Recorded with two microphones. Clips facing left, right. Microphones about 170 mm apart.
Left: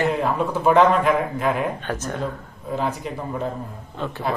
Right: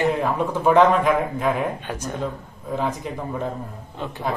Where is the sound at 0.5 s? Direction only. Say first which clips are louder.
Right 1 dB; 10° left (ahead or behind).